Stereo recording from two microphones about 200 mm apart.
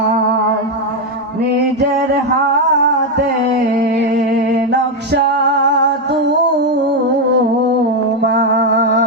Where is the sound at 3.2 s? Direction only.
55° right (ahead or behind).